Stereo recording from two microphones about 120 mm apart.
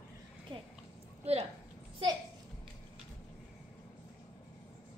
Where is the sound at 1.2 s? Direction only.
60° right (ahead or behind).